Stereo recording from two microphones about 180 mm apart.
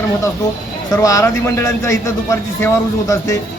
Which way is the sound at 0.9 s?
15° left (ahead or behind).